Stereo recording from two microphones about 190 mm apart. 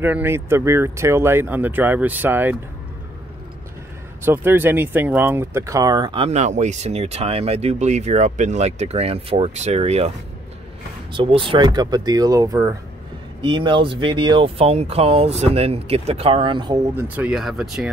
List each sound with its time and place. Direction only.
0.0 s speech: 10° right (ahead or behind)
4.2 s speech: 10° right (ahead or behind); by 10.1 s 35° right (ahead or behind)
11.1 s speech: 25° right (ahead or behind); by 17.9 s centre (ahead or behind)